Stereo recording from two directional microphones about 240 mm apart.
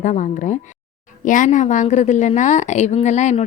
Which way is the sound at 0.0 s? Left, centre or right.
Left.